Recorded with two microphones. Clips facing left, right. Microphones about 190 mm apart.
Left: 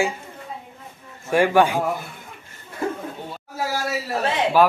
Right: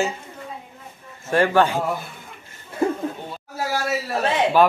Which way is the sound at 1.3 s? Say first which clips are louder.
Left 1 dB; 10° left (ahead or behind).